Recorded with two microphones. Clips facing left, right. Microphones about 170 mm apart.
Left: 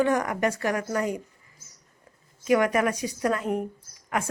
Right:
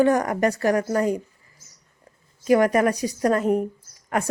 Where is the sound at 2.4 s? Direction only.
35° right (ahead or behind).